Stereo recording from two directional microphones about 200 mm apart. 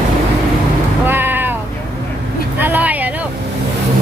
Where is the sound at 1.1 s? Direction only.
10° right (ahead or behind).